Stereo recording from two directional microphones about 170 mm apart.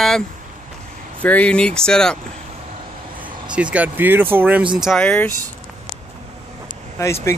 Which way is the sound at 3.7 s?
10° right (ahead or behind).